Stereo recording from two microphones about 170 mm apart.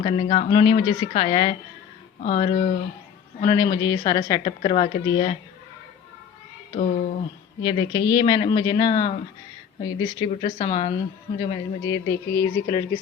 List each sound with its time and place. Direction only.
0.0 s a woman's voice: 35° left (ahead or behind)
3.4 s a woman's voice: 25° left (ahead or behind)
7.6 s a woman's voice: 25° left (ahead or behind)